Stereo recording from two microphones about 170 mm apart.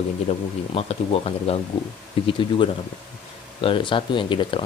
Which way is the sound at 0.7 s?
35° left (ahead or behind).